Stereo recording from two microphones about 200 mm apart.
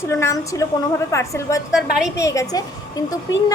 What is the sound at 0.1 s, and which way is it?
A woman's voice, 15° left (ahead or behind).